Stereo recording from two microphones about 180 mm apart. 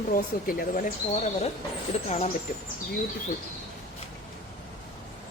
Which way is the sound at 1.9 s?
35° left (ahead or behind).